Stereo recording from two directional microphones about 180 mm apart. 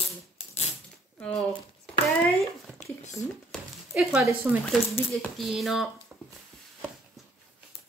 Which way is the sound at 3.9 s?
5° right (ahead or behind).